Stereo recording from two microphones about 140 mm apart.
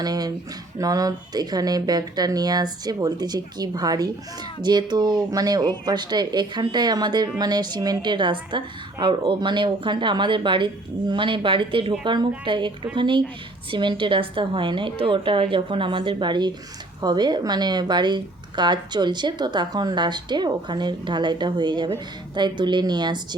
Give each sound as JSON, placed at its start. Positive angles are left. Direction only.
{"t": 0.0, "sound": "speech", "side_deg": -25}